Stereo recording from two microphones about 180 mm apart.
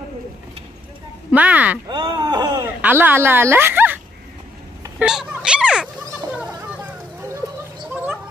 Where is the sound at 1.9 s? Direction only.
20° right (ahead or behind).